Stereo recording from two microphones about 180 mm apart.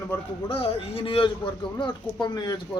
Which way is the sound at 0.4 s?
30° left (ahead or behind).